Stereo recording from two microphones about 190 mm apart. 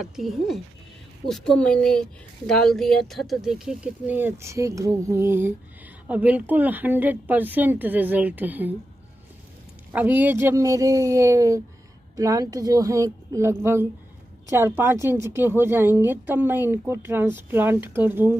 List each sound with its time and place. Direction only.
0.0 s speech: centre (ahead or behind)
9.9 s speech: 10° right (ahead or behind)